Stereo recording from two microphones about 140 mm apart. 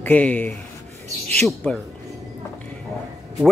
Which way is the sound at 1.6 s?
5° left (ahead or behind).